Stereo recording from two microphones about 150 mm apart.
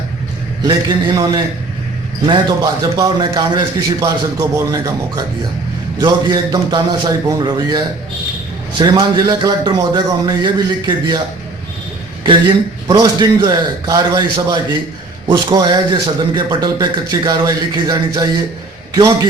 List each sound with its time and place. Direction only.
0.6 s speech: 30° right (ahead or behind)
2.9 s speech: 25° right (ahead or behind)
8.8 s speech: 30° right (ahead or behind)
12.9 s speech: 25° right (ahead or behind)